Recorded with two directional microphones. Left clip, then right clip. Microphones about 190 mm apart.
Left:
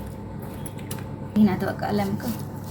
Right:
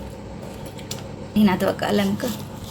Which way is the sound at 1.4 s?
45° right (ahead or behind).